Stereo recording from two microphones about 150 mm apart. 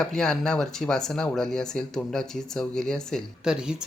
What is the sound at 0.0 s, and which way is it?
Speech, 5° left (ahead or behind).